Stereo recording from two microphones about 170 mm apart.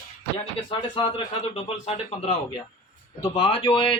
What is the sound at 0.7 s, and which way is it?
A man's voice, 30° left (ahead or behind).